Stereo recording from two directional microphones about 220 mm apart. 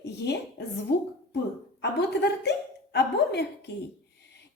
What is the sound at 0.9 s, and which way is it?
A woman's voice, 45° left (ahead or behind).